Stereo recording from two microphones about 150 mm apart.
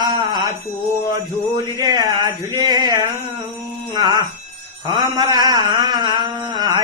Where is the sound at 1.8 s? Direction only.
25° right (ahead or behind).